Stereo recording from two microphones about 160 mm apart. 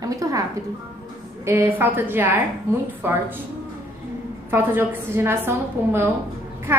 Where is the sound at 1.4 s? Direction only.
15° right (ahead or behind).